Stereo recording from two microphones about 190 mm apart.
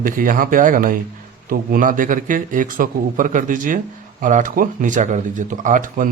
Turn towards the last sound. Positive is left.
turn(degrees=-45)  # may be behind; listen again after turning